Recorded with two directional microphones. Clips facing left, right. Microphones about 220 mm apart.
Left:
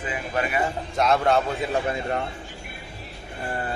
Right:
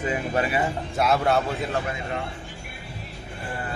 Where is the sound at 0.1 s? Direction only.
30° right (ahead or behind).